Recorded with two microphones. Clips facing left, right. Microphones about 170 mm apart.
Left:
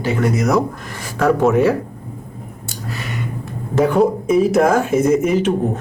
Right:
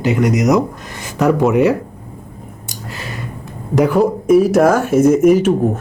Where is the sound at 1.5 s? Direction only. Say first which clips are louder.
Right 2 dB; 15° right (ahead or behind).